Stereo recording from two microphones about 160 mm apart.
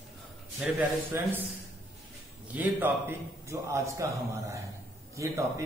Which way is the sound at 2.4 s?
10° right (ahead or behind).